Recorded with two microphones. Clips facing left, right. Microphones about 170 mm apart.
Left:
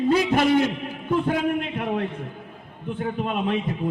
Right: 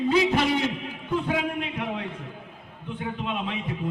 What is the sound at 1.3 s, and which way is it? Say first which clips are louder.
A man's voice: left 4 dB; 50° left (ahead or behind).